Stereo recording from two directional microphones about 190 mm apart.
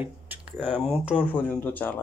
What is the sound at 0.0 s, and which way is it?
Speech, 5° right (ahead or behind).